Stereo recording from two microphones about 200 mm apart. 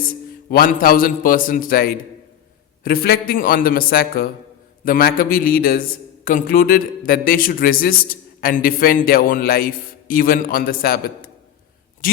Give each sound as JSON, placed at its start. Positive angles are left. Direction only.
{"t": 0.5, "sound": "a man's voice", "side_deg": 45}